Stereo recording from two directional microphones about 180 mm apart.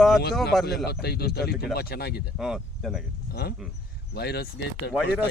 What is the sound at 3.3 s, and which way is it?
Speech, 60° left (ahead or behind).